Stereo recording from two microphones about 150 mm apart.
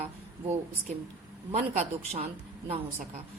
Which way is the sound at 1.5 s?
45° right (ahead or behind).